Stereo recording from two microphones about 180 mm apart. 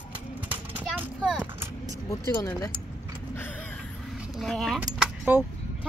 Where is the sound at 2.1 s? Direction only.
15° left (ahead or behind).